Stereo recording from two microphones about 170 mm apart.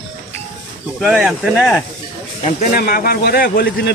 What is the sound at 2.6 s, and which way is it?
A man's voice, 60° left (ahead or behind).